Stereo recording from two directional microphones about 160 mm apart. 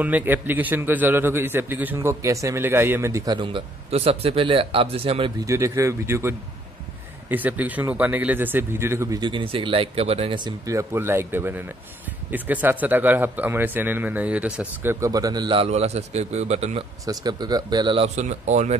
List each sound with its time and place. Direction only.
0.0 s a man's voice: 10° right (ahead or behind)
3.3 s speech: 35° right (ahead or behind)
5.4 s a man's voice: 20° right (ahead or behind); by 16.8 s 40° right (ahead or behind)
17.0 s speech: 25° right (ahead or behind); by 18.8 s 45° right (ahead or behind)